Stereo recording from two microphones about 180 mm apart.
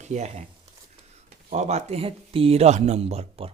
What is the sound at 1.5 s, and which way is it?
Speech, 40° right (ahead or behind).